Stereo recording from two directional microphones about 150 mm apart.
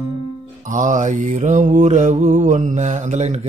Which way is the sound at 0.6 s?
55° right (ahead or behind).